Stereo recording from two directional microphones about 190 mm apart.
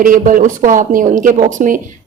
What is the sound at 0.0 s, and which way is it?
A woman's voice, 45° right (ahead or behind).